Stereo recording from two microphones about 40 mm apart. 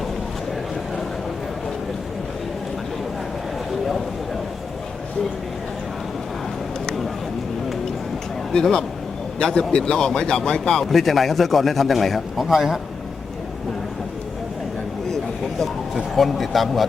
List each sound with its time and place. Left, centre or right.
8.5 s speech: centre
10.8 s a man's voice: centre
16.1 s a man's voice: centre